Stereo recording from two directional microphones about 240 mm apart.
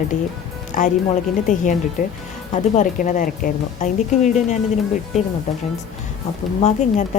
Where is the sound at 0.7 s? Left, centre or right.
Left.